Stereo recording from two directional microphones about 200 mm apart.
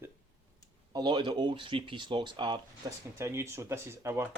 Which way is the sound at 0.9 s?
20° right (ahead or behind).